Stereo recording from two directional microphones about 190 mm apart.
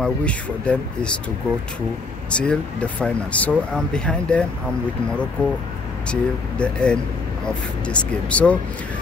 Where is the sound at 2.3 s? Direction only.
5° left (ahead or behind).